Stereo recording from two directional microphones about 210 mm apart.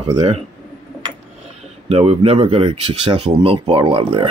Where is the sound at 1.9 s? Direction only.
30° right (ahead or behind).